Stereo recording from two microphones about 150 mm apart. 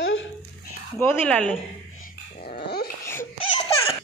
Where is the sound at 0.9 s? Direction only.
15° left (ahead or behind).